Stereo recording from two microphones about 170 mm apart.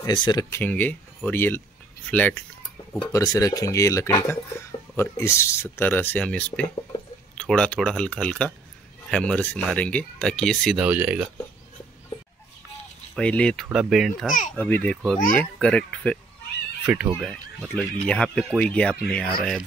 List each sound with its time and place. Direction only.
0.0 s speech: 25° left (ahead or behind); by 2.3 s 10° left (ahead or behind)
3.0 s speech: 20° left (ahead or behind); by 11.2 s 10° right (ahead or behind)
13.1 s speech: 5° left (ahead or behind)
14.5 s speech: 10° left (ahead or behind)
16.8 s speech: 10° right (ahead or behind)
17.2 s speech: 5° left (ahead or behind)